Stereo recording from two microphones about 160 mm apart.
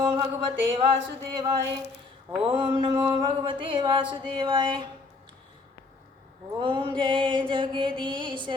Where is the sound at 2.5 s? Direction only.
30° right (ahead or behind).